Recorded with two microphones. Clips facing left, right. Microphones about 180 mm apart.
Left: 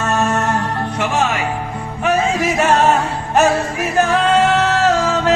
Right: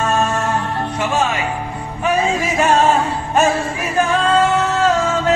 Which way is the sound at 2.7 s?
70° left (ahead or behind).